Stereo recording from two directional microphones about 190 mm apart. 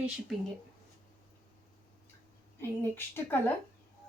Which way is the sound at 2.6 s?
10° left (ahead or behind).